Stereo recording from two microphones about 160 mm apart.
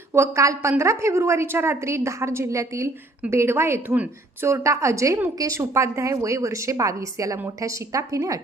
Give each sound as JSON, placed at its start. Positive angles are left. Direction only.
{"t": 0.1, "sound": "a woman's voice", "side_deg": -20}